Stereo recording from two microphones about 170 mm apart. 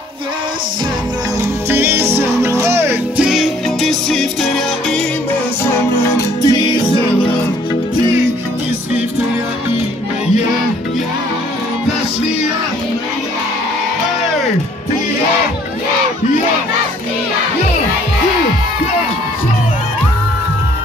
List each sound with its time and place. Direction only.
1.7 s music: 15° right (ahead or behind); by 5.0 s centre (ahead or behind)
6.1 s music: 25° left (ahead or behind)